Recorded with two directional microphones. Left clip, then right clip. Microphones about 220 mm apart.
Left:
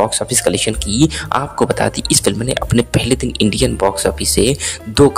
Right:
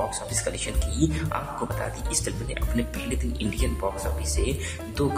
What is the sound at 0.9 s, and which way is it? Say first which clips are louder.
Speech: left 12 dB; 45° left (ahead or behind).